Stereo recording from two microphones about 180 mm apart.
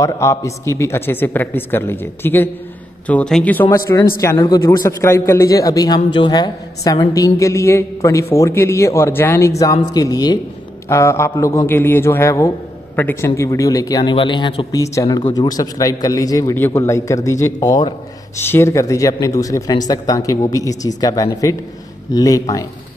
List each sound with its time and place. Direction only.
0.0 s a man's voice: 15° left (ahead or behind)
3.6 s a man's voice: 15° left (ahead or behind)